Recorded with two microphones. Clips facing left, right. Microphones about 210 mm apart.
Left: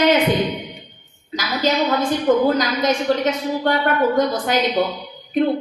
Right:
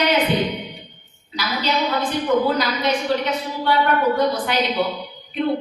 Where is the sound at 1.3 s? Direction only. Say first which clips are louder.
Left 3 dB; 45° left (ahead or behind).